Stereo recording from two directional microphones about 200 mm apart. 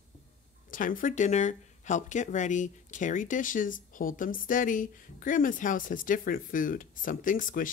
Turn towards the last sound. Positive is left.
turn(degrees=45)  # may be behind; listen again after turning